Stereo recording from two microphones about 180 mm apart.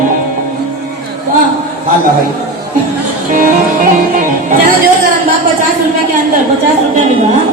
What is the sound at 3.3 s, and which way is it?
Music, 50° right (ahead or behind).